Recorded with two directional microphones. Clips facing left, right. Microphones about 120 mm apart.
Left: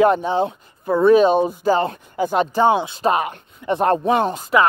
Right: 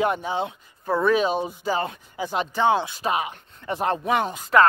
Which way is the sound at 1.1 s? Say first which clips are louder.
Left 8 dB; 45° left (ahead or behind).